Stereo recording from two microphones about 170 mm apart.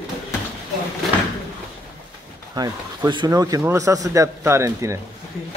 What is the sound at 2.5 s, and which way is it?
A man's voice, 25° right (ahead or behind).